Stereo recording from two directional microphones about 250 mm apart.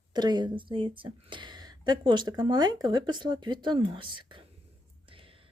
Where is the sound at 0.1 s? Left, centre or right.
Centre.